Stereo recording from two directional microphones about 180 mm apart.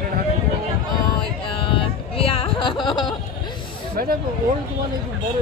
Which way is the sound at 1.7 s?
30° left (ahead or behind).